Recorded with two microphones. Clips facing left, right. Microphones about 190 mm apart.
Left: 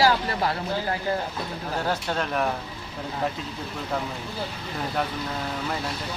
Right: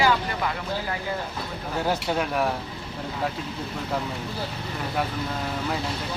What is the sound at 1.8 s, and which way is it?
Speech, 10° right (ahead or behind).